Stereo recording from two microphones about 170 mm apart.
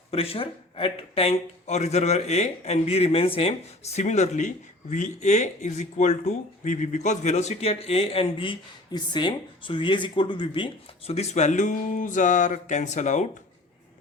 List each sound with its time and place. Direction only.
0.1 s speech: 35° left (ahead or behind)